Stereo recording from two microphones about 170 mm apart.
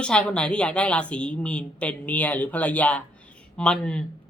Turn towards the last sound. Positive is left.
turn(degrees=5)  # may be behind; listen again after turning